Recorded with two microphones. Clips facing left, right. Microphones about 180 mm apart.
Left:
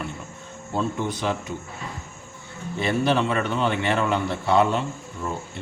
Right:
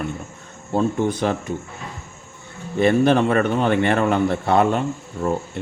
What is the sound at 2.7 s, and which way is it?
Speech, 50° right (ahead or behind).